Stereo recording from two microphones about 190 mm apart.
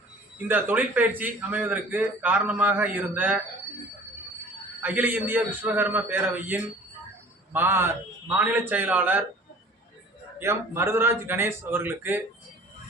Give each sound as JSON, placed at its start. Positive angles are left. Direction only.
{"t": 0.4, "sound": "a man's voice", "side_deg": -10}
{"t": 4.8, "sound": "a man's voice", "side_deg": -10}
{"t": 10.4, "sound": "a man's voice", "side_deg": -15}